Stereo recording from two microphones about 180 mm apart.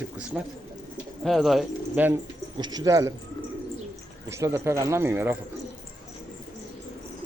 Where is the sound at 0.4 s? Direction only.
5° right (ahead or behind).